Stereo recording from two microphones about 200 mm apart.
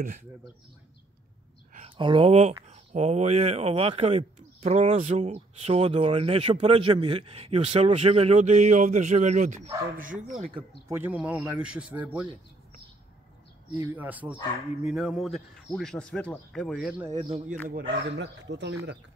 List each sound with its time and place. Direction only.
1.9 s speech: 25° right (ahead or behind)
10.9 s speech: 10° right (ahead or behind)
13.7 s speech: 10° right (ahead or behind)
17.1 s speech: 20° right (ahead or behind)
17.6 s speech: 55° right (ahead or behind)